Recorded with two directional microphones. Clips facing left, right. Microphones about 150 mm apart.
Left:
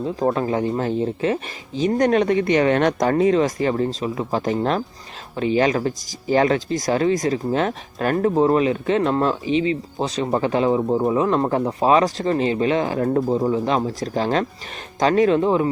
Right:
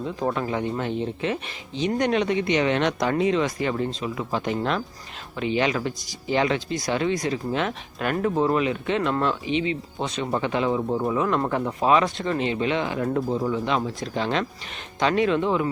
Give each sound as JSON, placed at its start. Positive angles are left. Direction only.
{"t": 0.0, "sound": "speech", "side_deg": 35}